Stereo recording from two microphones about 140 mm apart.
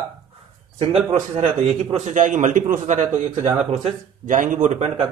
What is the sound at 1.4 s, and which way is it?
A man's voice, 60° right (ahead or behind).